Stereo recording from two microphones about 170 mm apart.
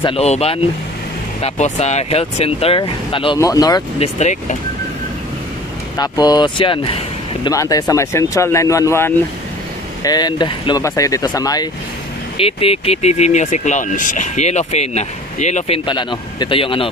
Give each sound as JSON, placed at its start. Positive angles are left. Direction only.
{"t": 0.0, "sound": "speech", "side_deg": 35}
{"t": 4.0, "sound": "speech", "side_deg": 45}
{"t": 5.9, "sound": "speech", "side_deg": 25}
{"t": 7.4, "sound": "speech", "side_deg": 20}
{"t": 12.4, "sound": "speech", "side_deg": 35}